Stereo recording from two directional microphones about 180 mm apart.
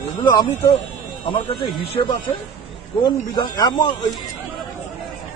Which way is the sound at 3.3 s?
20° left (ahead or behind).